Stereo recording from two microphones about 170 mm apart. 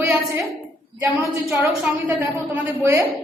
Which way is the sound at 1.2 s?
15° right (ahead or behind).